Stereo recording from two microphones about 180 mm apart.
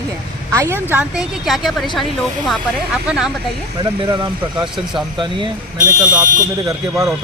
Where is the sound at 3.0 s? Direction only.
5° right (ahead or behind).